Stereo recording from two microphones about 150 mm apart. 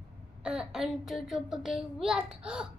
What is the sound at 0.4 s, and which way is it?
A child's voice, 5° right (ahead or behind).